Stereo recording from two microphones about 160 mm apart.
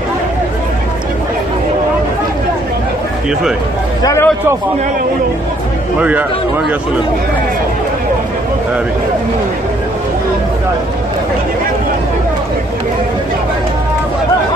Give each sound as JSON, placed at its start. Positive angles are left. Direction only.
{"t": 4.0, "sound": "speech", "side_deg": 20}